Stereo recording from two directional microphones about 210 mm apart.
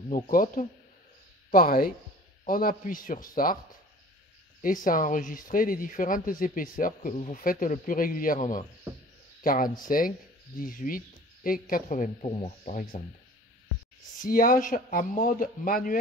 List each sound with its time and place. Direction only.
0.1 s speech: 40° left (ahead or behind)
4.8 s speech: 40° left (ahead or behind)
14.2 s speech: 40° left (ahead or behind)